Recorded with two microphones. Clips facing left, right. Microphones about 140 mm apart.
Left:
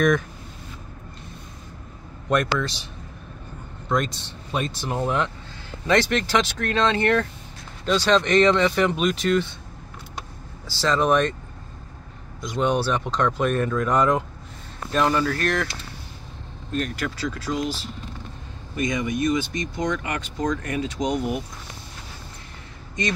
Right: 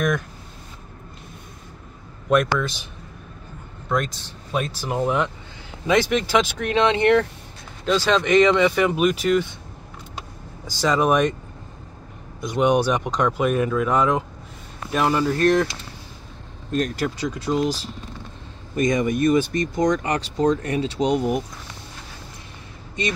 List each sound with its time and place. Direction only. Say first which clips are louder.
2.2 s speech: right 3 dB; 5° right (ahead or behind)
3.9 s speech: even; centre (ahead or behind); by 7.2 s 20° right (ahead or behind)
7.8 s speech: even; 5° right (ahead or behind)
10.7 s speech: right 1 dB; 10° right (ahead or behind)
12.4 s speech: right 4 dB; 15° right (ahead or behind)
15.2 s speech: right 6 dB; 25° right (ahead or behind)
16.7 s speech: right 4 dB; 35° right (ahead or behind)
17.2 s speech: right 4 dB; 20° right (ahead or behind)
18.8 s speech: right 4 dB; 45° right (ahead or behind)